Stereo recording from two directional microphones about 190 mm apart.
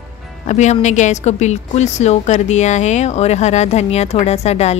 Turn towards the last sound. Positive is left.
turn(degrees=35)  # may be behind; listen again after turning